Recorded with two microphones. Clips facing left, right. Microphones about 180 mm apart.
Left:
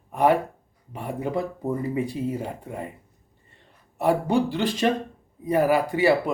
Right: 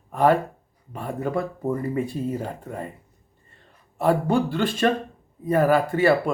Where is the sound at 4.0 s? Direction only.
15° left (ahead or behind).